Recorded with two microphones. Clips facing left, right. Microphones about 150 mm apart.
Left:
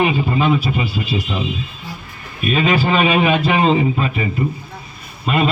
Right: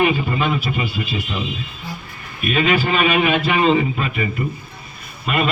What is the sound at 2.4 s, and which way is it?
A man's voice, 35° left (ahead or behind).